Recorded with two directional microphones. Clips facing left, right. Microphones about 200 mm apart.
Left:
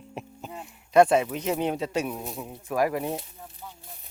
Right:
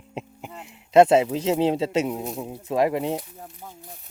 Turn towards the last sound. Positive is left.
turn(degrees=-25)  # may be behind; listen again after turning